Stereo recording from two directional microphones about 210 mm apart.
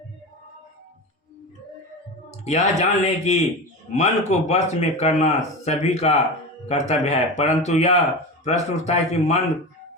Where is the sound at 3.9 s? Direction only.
35° left (ahead or behind).